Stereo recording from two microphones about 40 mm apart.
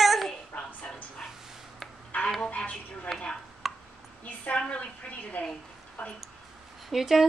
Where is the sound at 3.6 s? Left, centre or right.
Centre.